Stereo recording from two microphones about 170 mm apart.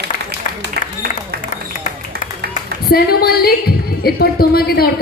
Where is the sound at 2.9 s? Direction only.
65° left (ahead or behind).